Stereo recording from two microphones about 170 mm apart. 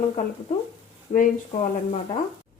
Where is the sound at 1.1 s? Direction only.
40° left (ahead or behind).